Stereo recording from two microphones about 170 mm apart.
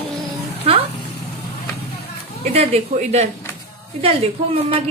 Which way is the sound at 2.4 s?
40° right (ahead or behind).